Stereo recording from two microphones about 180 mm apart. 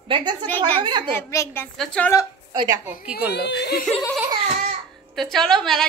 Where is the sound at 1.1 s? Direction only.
15° left (ahead or behind).